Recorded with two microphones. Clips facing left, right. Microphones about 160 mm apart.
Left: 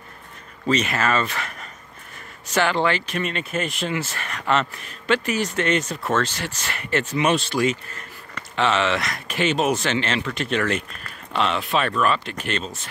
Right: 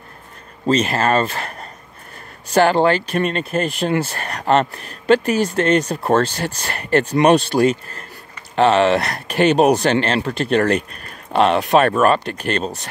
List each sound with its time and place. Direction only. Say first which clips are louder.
0.7 s speech: right 5 dB; 30° right (ahead or behind)